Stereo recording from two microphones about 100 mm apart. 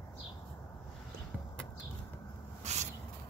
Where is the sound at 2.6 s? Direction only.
90° right.